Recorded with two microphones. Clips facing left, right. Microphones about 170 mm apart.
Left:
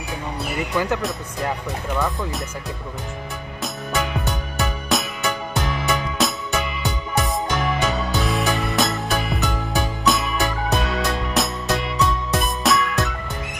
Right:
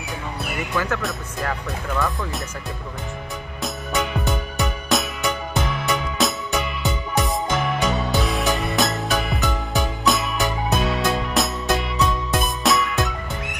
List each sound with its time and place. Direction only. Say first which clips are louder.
0.7 s speech: left 2 dB; 15° left (ahead or behind)
3.6 s music: even; centre (ahead or behind)